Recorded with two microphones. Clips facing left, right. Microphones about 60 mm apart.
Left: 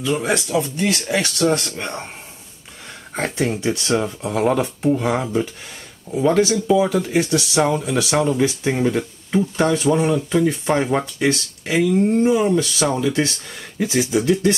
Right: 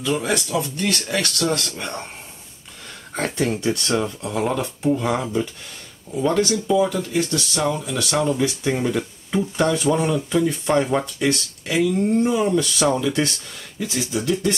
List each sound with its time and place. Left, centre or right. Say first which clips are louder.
0.0 s speech: left 2 dB; centre
0.6 s speech: left 3 dB; left
3.2 s speech: left 1 dB; centre